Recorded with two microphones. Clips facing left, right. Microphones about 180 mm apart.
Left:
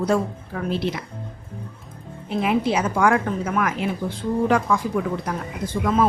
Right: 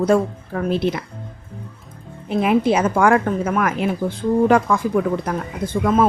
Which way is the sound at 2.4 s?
50° right (ahead or behind).